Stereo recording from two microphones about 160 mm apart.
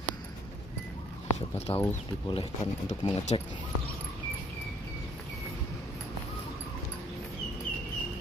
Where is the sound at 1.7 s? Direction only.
30° left (ahead or behind).